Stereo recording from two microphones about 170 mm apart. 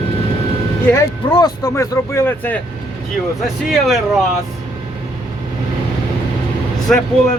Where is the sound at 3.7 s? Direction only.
Centre (ahead or behind).